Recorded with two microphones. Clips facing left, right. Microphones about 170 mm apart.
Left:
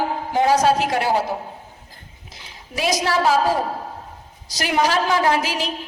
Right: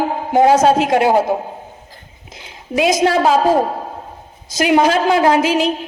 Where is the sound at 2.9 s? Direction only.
50° right (ahead or behind).